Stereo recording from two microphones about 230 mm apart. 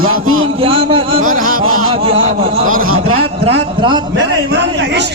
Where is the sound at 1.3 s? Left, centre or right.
Right.